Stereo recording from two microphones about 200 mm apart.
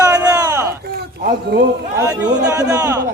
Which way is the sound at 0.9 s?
50° right (ahead or behind).